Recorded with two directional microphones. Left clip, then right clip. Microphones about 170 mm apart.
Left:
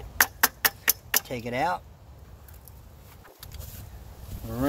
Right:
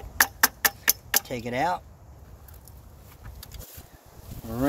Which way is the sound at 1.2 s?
20° right (ahead or behind).